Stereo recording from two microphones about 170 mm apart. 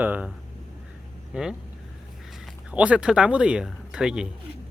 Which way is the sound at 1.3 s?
5° right (ahead or behind).